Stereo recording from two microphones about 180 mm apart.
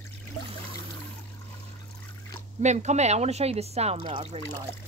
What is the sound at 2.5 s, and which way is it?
Speech, 40° right (ahead or behind).